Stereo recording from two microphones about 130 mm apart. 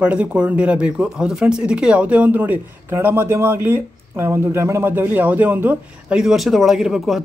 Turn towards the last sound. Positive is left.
turn(degrees=0)  # may be behind; listen again after turning